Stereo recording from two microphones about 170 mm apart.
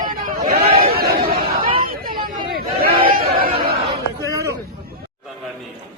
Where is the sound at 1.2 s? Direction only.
65° right (ahead or behind).